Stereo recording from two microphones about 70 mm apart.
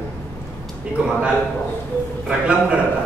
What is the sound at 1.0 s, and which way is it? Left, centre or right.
Speech, centre.